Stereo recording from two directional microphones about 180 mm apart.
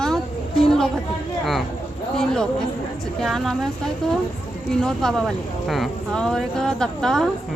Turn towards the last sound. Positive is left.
turn(degrees=5)  # may be behind; listen again after turning